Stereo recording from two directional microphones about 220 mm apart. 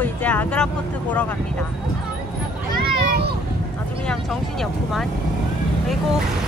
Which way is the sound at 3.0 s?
45° right (ahead or behind).